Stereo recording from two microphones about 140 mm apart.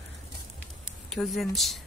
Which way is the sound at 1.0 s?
Centre (ahead or behind).